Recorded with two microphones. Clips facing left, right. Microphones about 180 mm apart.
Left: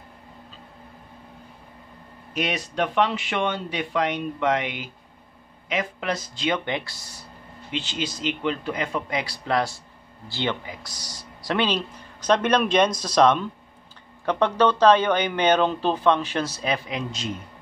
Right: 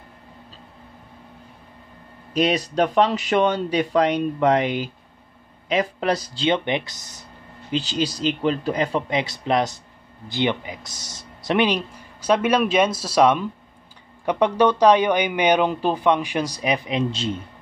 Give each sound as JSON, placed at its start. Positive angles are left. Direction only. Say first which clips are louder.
{"t": 2.3, "sound": "speech", "louder": "right 6 dB", "side_deg": -35}
{"t": 7.7, "sound": "speech", "louder": "right 6 dB", "side_deg": -35}
{"t": 9.1, "sound": "speech", "louder": "right 3 dB", "side_deg": -20}